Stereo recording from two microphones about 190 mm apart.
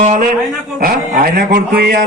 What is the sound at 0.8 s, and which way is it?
A man's voice, 50° right (ahead or behind).